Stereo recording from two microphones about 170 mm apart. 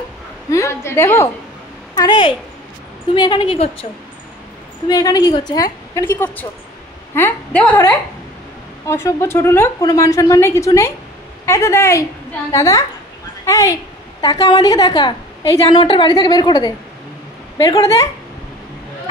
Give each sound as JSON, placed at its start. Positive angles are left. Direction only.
{"t": 0.5, "sound": "a woman's voice", "side_deg": 15}
{"t": 2.0, "sound": "a woman's voice", "side_deg": 25}
{"t": 4.8, "sound": "a woman's voice", "side_deg": 20}
{"t": 8.8, "sound": "a woman's voice", "side_deg": 15}